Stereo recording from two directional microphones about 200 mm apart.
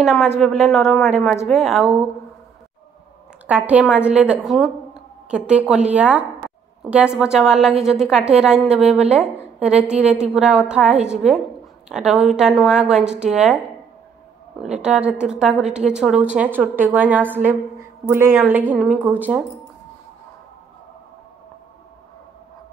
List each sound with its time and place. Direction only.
0.0 s a woman's voice: centre (ahead or behind)
3.4 s a woman's voice: 5° right (ahead or behind)
14.6 s a woman's voice: 5° right (ahead or behind)